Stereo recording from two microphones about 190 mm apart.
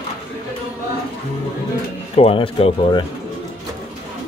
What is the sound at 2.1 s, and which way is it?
Speech, 30° left (ahead or behind).